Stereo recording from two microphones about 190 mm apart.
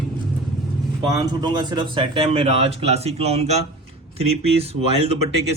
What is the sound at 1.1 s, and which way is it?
Speech, 20° right (ahead or behind).